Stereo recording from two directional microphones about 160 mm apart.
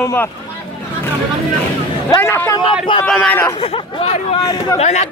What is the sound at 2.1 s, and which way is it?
Speech, 15° left (ahead or behind).